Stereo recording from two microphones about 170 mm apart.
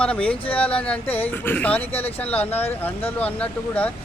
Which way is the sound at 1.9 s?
35° left (ahead or behind).